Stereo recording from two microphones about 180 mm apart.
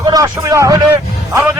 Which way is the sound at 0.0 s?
20° right (ahead or behind).